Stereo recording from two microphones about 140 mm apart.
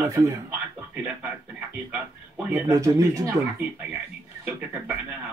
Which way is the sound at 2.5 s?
20° right (ahead or behind).